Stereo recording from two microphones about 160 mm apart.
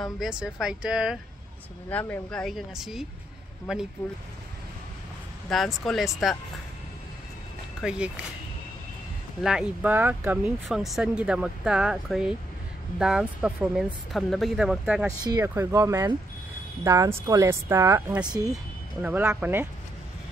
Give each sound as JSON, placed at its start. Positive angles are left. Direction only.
{"t": 0.0, "sound": "speech", "side_deg": -5}
{"t": 1.9, "sound": "speech", "side_deg": 10}
{"t": 5.5, "sound": "speech", "side_deg": 0}
{"t": 7.8, "sound": "speech", "side_deg": -5}
{"t": 9.4, "sound": "speech", "side_deg": -5}
{"t": 15.0, "sound": "speech", "side_deg": -20}